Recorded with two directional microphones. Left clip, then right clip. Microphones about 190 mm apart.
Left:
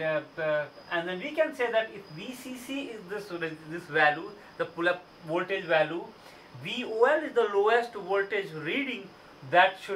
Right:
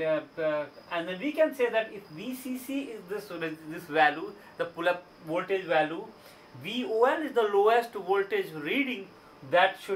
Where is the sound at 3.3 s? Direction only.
15° right (ahead or behind).